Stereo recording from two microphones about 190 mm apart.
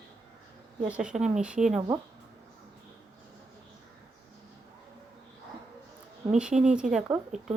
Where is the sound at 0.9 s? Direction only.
5° right (ahead or behind).